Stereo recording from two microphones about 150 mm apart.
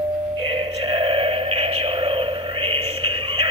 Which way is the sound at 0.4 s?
35° right (ahead or behind).